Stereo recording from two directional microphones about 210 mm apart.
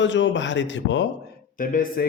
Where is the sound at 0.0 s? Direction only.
60° left (ahead or behind).